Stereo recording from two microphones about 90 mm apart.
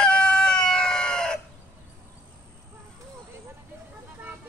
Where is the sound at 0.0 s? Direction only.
10° left (ahead or behind).